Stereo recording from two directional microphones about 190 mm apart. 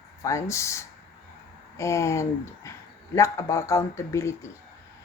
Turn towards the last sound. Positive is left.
turn(degrees=15)  # may be behind; listen again after turning